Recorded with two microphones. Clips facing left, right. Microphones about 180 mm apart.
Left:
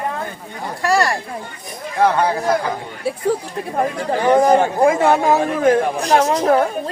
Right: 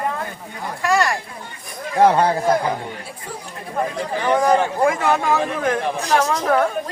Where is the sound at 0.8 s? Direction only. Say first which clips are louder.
Left 2 dB; 35° left (ahead or behind).